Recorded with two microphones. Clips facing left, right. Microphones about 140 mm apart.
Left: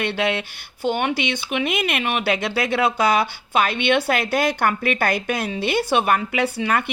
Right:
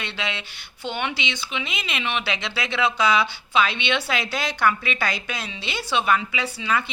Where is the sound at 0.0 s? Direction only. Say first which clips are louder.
Left 9 dB; 55° left (ahead or behind).